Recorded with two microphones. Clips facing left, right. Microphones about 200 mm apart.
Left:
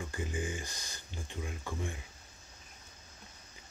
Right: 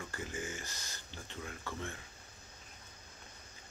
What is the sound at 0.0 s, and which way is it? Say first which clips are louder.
Speech: left 4 dB; 15° left (ahead or behind).